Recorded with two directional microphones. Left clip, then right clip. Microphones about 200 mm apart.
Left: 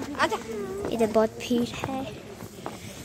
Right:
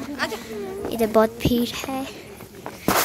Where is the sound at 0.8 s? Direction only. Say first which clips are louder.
Right 4 dB; 5° right (ahead or behind).